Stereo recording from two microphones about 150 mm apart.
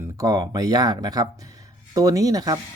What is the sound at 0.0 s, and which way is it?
Speech, 25° right (ahead or behind).